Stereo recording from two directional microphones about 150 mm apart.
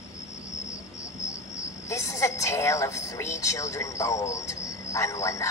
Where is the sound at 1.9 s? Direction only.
20° left (ahead or behind).